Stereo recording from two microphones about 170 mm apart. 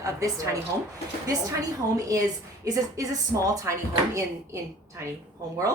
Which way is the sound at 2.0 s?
20° right (ahead or behind).